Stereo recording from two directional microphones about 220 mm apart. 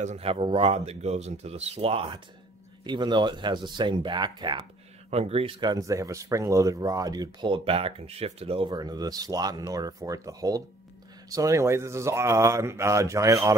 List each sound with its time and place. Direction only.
0.0 s speech: 30° right (ahead or behind); by 13.6 s 15° right (ahead or behind)